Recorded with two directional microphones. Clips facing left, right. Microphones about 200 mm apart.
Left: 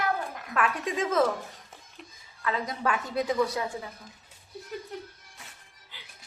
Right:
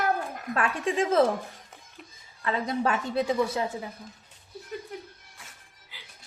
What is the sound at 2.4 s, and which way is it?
Speech, 30° right (ahead or behind).